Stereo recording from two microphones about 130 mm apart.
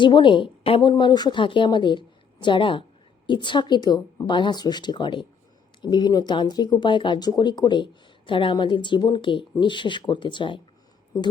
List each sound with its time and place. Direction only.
0.0 s a woman's voice: 40° left (ahead or behind)